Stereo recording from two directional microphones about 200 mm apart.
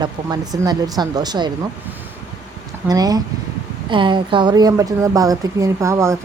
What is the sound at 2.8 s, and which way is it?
A woman's voice, 20° right (ahead or behind).